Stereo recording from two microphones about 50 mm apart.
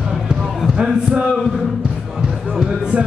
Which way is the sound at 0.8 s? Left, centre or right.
Right.